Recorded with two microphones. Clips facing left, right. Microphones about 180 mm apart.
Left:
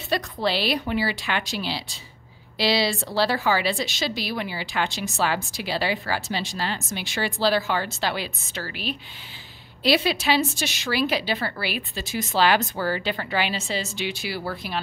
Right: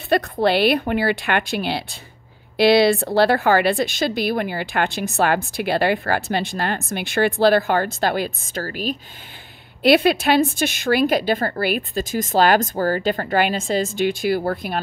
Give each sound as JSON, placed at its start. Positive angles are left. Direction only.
{"t": 0.1, "sound": "a woman's voice", "side_deg": -55}
{"t": 9.8, "sound": "speech", "side_deg": -55}